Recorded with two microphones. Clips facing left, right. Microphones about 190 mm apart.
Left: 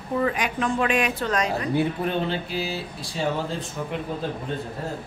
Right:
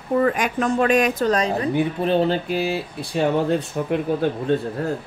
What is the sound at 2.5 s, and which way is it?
Speech, 55° right (ahead or behind).